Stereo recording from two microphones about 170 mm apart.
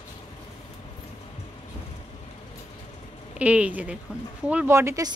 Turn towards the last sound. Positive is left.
turn(degrees=-20)  # may be behind; listen again after turning